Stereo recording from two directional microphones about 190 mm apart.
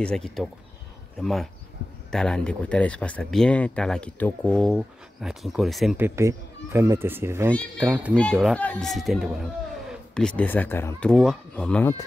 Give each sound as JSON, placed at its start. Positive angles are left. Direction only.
{"t": 0.0, "sound": "speech", "side_deg": 5}
{"t": 6.0, "sound": "speech", "side_deg": -15}
{"t": 8.1, "sound": "speech", "side_deg": 5}